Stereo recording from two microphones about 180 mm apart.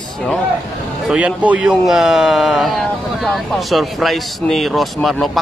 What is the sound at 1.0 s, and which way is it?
Speech, 5° right (ahead or behind).